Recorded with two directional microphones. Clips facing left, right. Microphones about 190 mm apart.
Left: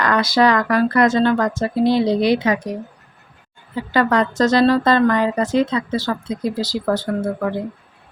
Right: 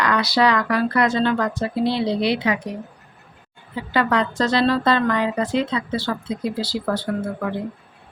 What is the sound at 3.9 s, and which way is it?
Speech, 45° left (ahead or behind).